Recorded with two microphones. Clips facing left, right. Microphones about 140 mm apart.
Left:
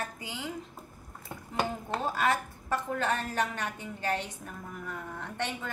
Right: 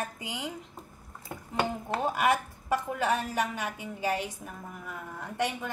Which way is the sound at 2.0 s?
15° right (ahead or behind).